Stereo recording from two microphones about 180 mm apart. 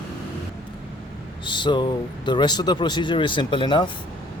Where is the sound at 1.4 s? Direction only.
25° left (ahead or behind).